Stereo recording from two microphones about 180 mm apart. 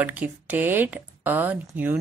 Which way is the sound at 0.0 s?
10° right (ahead or behind).